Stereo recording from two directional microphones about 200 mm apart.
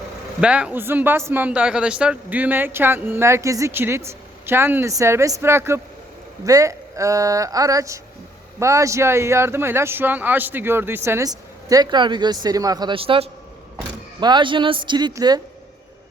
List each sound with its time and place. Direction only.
0.4 s speech: 5° right (ahead or behind)